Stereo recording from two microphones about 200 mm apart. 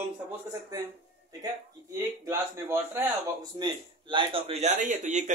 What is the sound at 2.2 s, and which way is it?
A man's voice, 15° right (ahead or behind).